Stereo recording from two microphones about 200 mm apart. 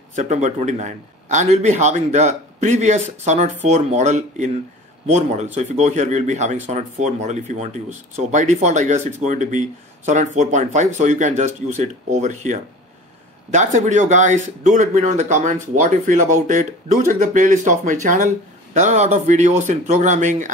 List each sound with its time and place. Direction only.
0.1 s speech: 35° right (ahead or behind)